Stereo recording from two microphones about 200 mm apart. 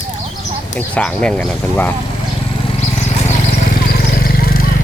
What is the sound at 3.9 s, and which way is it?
Vehicle, 50° left (ahead or behind).